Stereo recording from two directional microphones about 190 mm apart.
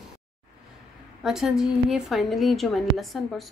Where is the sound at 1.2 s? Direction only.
Centre (ahead or behind).